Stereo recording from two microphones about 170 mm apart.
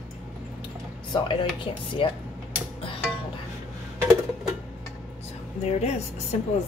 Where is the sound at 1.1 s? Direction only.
30° left (ahead or behind).